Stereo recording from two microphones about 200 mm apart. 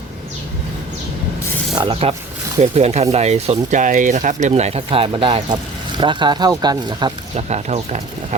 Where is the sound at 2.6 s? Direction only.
35° right (ahead or behind).